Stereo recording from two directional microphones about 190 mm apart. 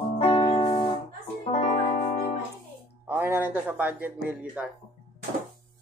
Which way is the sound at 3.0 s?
10° right (ahead or behind).